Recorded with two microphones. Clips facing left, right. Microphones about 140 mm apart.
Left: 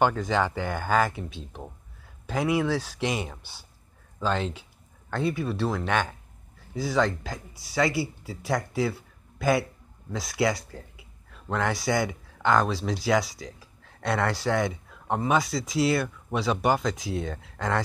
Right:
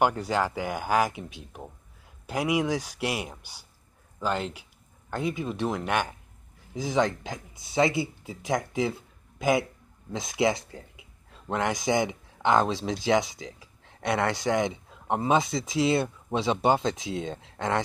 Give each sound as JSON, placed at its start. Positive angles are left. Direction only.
{"t": 0.0, "sound": "speech", "side_deg": -10}
{"t": 10.1, "sound": "a sound", "side_deg": -20}
{"t": 11.4, "sound": "speech", "side_deg": -15}